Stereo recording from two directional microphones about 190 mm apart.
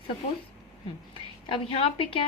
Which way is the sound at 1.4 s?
30° left (ahead or behind).